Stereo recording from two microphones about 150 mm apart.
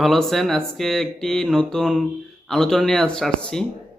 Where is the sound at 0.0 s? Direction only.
Centre (ahead or behind).